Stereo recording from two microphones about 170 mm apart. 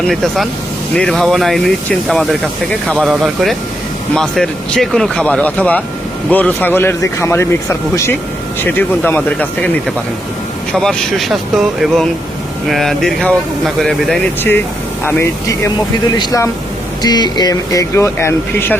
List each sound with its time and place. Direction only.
0.1 s speech: centre (ahead or behind)
10.7 s speech: 5° left (ahead or behind)
15.0 s speech: 15° left (ahead or behind)